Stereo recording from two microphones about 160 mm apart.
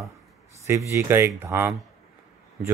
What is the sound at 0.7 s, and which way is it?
Speech, 15° right (ahead or behind).